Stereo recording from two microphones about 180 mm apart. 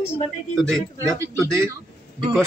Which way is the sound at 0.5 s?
Centre (ahead or behind).